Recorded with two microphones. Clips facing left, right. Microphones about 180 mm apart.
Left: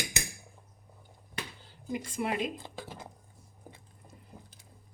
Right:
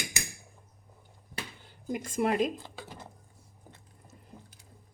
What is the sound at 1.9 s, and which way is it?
Speech, 45° right (ahead or behind).